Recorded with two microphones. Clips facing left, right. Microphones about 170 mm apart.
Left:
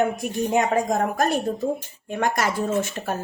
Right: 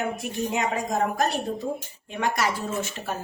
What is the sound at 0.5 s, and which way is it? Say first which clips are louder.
Speech: left 5 dB; 50° left (ahead or behind).